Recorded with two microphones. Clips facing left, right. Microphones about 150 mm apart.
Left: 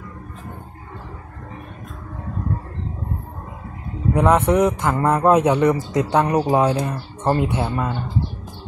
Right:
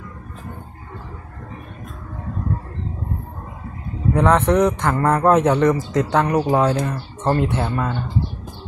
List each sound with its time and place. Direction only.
4.1 s a man's voice: 10° left (ahead or behind)